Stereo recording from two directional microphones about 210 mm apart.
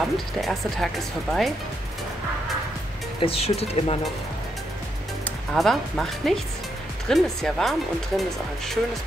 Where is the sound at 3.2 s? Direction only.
30° left (ahead or behind).